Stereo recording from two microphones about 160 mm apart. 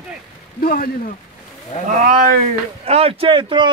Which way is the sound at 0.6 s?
60° left (ahead or behind).